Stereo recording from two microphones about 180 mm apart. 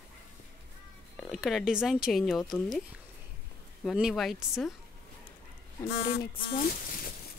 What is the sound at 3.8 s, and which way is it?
Speech, centre (ahead or behind).